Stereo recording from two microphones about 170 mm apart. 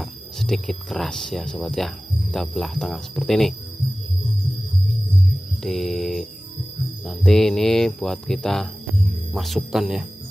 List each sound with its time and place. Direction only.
0.0 s speech: centre (ahead or behind)
2.3 s cricket: centre (ahead or behind)
5.6 s cricket: centre (ahead or behind)